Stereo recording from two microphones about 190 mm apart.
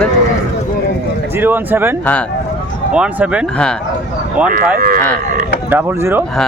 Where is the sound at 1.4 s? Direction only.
10° right (ahead or behind).